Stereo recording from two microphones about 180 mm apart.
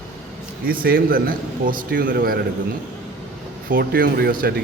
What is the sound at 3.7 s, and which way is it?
Speech, 50° right (ahead or behind).